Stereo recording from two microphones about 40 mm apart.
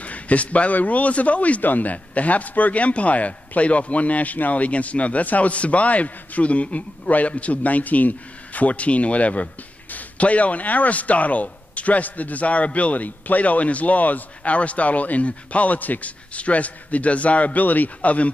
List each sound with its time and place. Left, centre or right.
0.0 s speech: left